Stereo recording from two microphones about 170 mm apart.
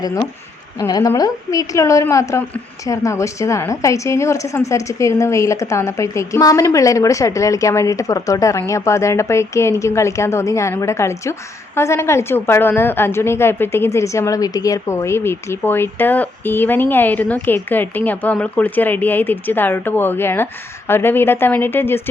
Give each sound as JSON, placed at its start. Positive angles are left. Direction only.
{"t": 0.8, "sound": "a woman's voice", "side_deg": 20}